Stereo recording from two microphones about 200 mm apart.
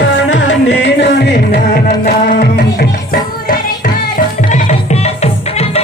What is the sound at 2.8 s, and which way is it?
Music, 45° left (ahead or behind).